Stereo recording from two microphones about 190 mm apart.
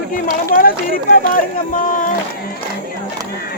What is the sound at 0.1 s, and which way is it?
Speech, 45° left (ahead or behind).